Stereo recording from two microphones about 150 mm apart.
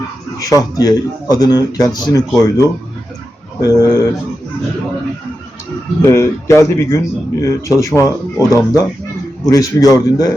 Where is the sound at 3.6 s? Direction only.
25° left (ahead or behind).